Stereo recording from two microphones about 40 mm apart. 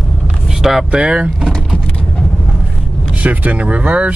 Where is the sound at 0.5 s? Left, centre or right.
Centre.